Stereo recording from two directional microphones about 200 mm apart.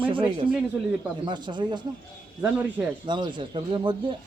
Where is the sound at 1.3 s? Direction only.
20° right (ahead or behind).